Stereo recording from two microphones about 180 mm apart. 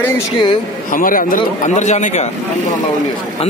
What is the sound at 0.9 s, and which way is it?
Speech, 50° left (ahead or behind).